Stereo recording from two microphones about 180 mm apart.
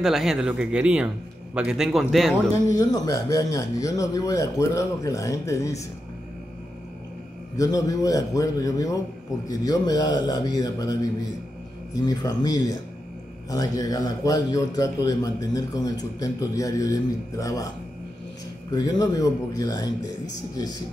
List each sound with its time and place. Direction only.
0.0 s a man's voice: centre (ahead or behind)
2.5 s speech: 20° left (ahead or behind)
7.5 s a man's voice: 20° left (ahead or behind)
18.7 s a man's voice: 20° left (ahead or behind)